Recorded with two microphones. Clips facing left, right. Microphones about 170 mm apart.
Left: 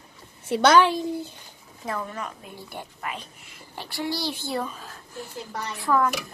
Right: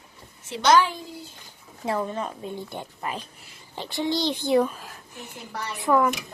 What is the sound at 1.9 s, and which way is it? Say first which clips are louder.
A woman's voice: right 5 dB; 30° right (ahead or behind).